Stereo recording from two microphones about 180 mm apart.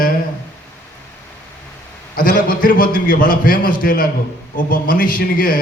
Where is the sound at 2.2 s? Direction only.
50° left (ahead or behind).